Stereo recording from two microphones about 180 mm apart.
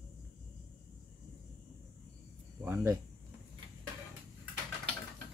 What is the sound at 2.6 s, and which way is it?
Cricket, 15° right (ahead or behind).